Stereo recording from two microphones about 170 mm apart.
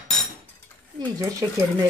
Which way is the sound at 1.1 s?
20° right (ahead or behind).